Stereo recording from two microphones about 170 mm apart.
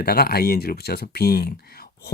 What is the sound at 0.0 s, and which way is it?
Speech, 65° left (ahead or behind).